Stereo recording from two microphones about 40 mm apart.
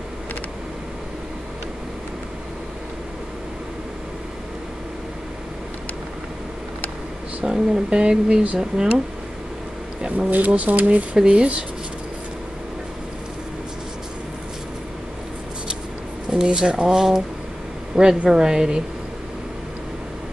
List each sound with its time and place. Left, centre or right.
7.4 s speech: centre
10.1 s speech: right
16.3 s speech: right